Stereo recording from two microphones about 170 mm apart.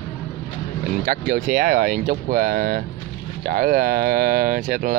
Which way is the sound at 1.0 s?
50° right (ahead or behind).